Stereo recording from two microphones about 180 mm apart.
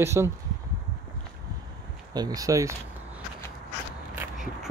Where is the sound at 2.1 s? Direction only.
20° right (ahead or behind).